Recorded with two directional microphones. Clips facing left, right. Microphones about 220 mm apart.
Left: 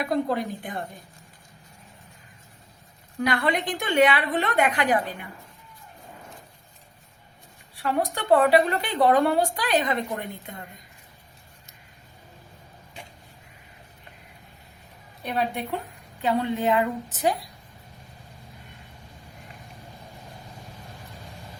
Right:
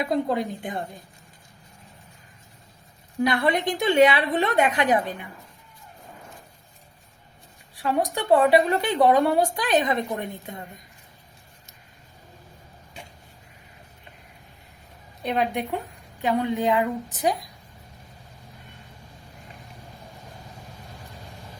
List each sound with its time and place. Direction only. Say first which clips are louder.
0.0 s a woman's voice: right 1 dB; 20° right (ahead or behind)
3.2 s a woman's voice: right 2 dB; 25° right (ahead or behind)
7.8 s a woman's voice: right 2 dB; 20° right (ahead or behind)
15.2 s a woman's voice: right 3 dB; 15° right (ahead or behind)